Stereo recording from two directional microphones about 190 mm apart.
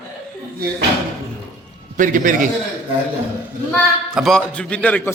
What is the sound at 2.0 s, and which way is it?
Speech, 45° right (ahead or behind).